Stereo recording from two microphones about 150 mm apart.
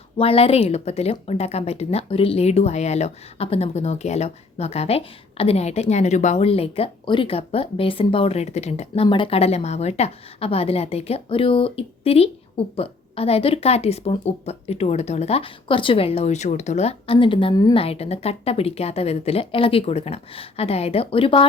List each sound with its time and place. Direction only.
0.2 s a woman's voice: 40° left (ahead or behind)
9.0 s a woman's voice: 35° left (ahead or behind)
17.5 s a woman's voice: 25° left (ahead or behind)
17.7 s a woman's voice: 40° left (ahead or behind)